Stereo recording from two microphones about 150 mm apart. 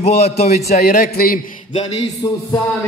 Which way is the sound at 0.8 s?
65° left (ahead or behind).